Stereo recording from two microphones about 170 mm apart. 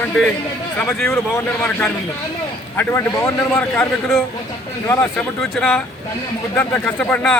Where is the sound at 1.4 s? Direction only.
15° left (ahead or behind).